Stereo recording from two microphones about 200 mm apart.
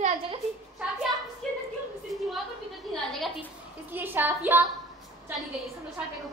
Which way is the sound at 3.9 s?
10° right (ahead or behind).